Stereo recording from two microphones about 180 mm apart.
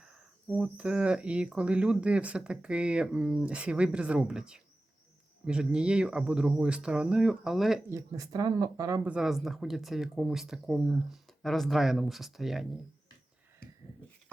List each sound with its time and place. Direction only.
0.0 s speech: 5° right (ahead or behind)
7.9 s speech: 15° right (ahead or behind)
9.0 s speech: 5° right (ahead or behind)